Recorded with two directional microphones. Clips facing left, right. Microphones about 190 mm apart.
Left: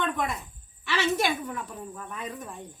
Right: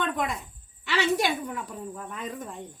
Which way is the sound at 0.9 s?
15° right (ahead or behind).